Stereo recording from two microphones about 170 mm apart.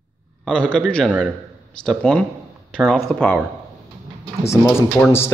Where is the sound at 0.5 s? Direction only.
5° left (ahead or behind).